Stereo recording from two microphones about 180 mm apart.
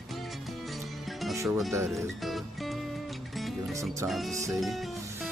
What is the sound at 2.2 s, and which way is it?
Music, centre (ahead or behind).